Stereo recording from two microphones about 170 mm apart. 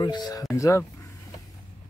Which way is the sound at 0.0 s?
25° left (ahead or behind).